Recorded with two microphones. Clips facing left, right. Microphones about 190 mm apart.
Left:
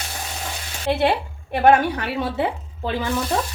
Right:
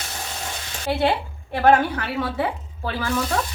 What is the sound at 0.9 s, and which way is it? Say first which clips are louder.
A woman's voice: left 2 dB; 20° left (ahead or behind).